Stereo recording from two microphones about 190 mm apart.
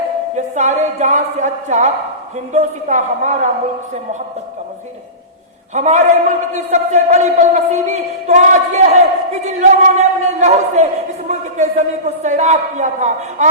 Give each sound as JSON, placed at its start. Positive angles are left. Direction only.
{"t": 0.3, "sound": "a man's voice", "side_deg": -40}
{"t": 5.7, "sound": "a man's voice", "side_deg": -40}